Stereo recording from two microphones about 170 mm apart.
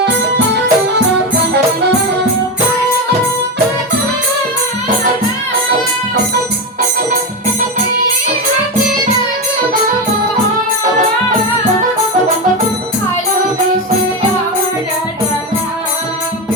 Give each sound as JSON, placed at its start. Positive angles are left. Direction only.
{"t": 0.0, "sound": "music", "side_deg": -85}